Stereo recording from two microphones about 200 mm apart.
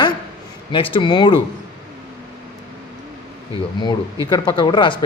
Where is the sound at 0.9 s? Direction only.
25° left (ahead or behind).